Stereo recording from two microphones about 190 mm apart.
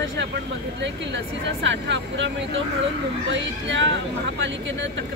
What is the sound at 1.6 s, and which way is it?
Speech, 70° right (ahead or behind).